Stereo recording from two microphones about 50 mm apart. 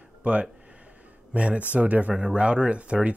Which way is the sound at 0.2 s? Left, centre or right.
Right.